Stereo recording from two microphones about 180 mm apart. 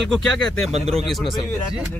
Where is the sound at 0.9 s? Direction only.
Centre (ahead or behind).